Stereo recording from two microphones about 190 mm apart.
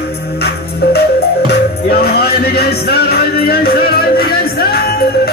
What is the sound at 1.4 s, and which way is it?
Music, 55° left (ahead or behind).